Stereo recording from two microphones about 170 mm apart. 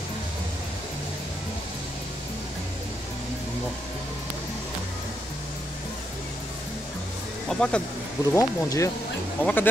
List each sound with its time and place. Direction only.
7.4 s speech: 5° left (ahead or behind)
8.3 s speech: 20° left (ahead or behind)